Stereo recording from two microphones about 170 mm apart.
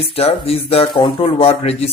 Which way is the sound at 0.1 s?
35° left (ahead or behind).